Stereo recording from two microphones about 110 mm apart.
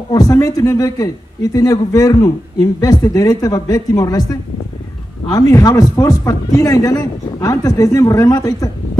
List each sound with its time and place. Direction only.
0.1 s speech: 35° left (ahead or behind)